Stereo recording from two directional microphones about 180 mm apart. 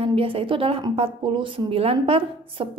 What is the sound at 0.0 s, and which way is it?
Speech, 30° right (ahead or behind).